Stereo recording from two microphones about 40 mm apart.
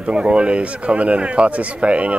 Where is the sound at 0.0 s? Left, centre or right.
Right.